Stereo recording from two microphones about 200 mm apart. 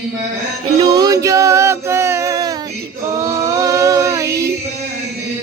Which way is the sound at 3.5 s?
15° right (ahead or behind).